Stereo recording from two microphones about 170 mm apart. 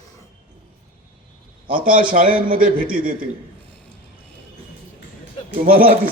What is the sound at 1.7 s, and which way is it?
A man's voice, 55° right (ahead or behind).